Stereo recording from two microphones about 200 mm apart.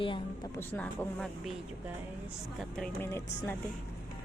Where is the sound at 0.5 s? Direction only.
10° left (ahead or behind).